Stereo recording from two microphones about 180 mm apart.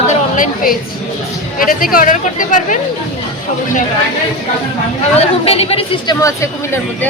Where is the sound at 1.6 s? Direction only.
50° left (ahead or behind).